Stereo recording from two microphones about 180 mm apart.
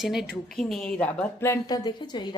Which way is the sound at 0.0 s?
Centre (ahead or behind).